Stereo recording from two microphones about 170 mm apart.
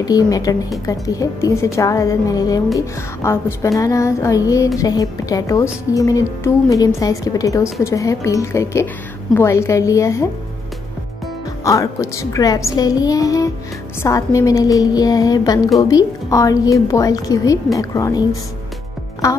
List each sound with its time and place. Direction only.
0.0 s a woman's voice: 20° left (ahead or behind)
11.6 s a woman's voice: 20° left (ahead or behind)